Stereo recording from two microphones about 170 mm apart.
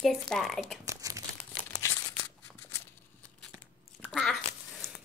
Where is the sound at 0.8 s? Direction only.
20° right (ahead or behind).